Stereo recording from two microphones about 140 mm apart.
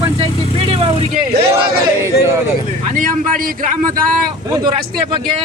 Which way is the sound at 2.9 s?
70° right (ahead or behind).